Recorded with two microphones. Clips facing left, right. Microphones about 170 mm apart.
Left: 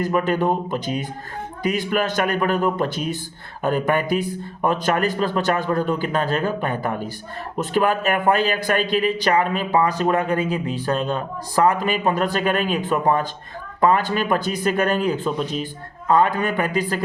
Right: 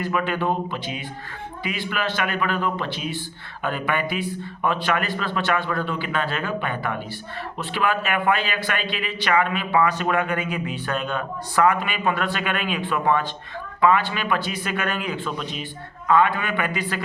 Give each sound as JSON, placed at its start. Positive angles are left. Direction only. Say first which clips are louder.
{"t": 0.0, "sound": "a man's voice", "louder": "left 4 dB", "side_deg": 40}